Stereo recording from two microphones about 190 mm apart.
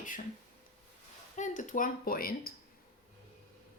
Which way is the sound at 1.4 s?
45° left (ahead or behind).